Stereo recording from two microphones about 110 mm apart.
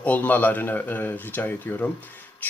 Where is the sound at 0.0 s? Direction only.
15° left (ahead or behind).